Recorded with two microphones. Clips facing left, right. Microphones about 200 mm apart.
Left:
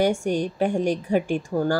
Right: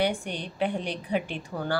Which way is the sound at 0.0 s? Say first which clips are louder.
Left 7 dB; 45° left (ahead or behind).